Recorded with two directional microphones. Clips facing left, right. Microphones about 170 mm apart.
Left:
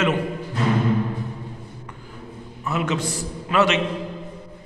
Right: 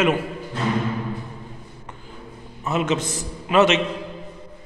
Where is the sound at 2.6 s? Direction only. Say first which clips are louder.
Right 2 dB; 20° right (ahead or behind).